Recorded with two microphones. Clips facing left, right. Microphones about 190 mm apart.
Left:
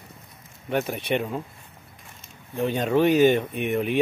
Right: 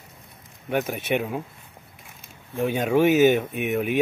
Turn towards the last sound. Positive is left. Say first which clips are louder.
# even
turn(degrees=-5)  # may be behind; listen again after turning